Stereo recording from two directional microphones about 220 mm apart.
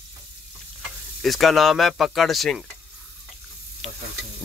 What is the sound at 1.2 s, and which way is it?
Speech, centre (ahead or behind).